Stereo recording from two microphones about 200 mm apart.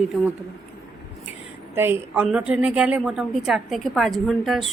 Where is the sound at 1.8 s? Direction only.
10° right (ahead or behind).